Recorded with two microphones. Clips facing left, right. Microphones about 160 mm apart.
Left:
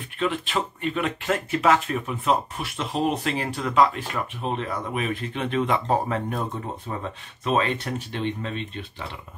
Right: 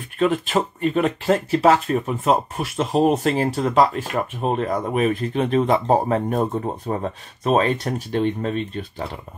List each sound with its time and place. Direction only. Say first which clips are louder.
0.2 s speech: right 6 dB; 45° right (ahead or behind)